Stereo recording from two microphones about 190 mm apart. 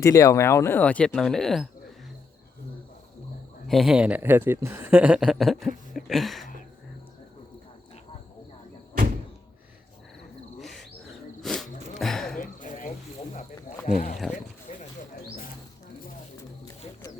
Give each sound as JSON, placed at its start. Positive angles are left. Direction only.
{"t": 0.0, "sound": "speech", "side_deg": 15}
{"t": 3.7, "sound": "speech", "side_deg": 0}
{"t": 10.6, "sound": "insect", "side_deg": 0}
{"t": 11.4, "sound": "a sound", "side_deg": 0}
{"t": 12.4, "sound": "a sound", "side_deg": 45}
{"t": 13.3, "sound": "snake", "side_deg": 40}
{"t": 14.3, "sound": "wild animals", "side_deg": 40}